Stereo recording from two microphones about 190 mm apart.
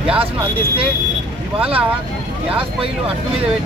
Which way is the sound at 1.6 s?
30° right (ahead or behind).